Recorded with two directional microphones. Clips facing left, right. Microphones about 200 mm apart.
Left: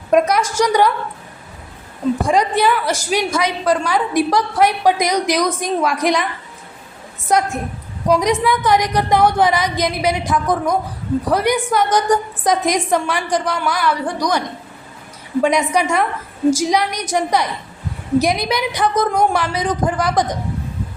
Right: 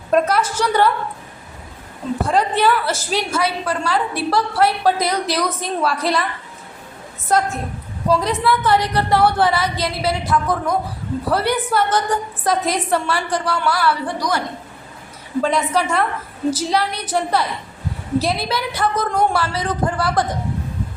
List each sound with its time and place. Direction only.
0.1 s a woman's voice: 15° left (ahead or behind)
2.2 s a woman's voice: 15° left (ahead or behind)
7.3 s a woman's voice: 15° left (ahead or behind)